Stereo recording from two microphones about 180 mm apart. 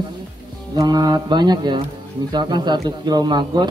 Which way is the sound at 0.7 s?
20° right (ahead or behind).